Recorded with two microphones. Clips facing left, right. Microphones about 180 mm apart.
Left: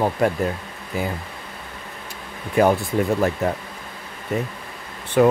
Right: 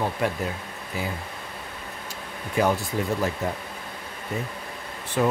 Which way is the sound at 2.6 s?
60° left (ahead or behind).